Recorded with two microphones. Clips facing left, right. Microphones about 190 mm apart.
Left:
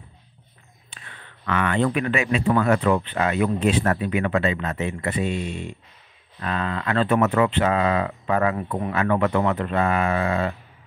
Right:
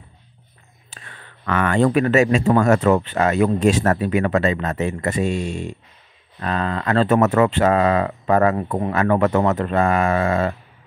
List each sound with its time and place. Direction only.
0.8 s speech: 40° right (ahead or behind)